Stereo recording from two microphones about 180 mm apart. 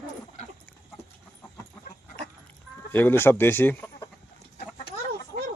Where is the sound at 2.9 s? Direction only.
10° left (ahead or behind).